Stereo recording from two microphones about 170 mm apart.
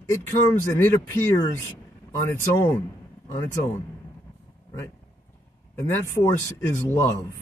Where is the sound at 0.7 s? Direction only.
15° left (ahead or behind).